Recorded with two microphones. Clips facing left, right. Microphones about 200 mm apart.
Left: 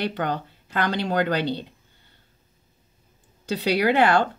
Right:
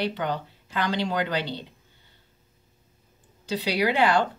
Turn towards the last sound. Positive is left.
turn(degrees=55)  # may be behind; listen again after turning